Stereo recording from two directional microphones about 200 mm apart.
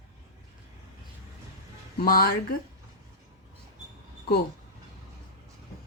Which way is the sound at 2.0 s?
45° left (ahead or behind).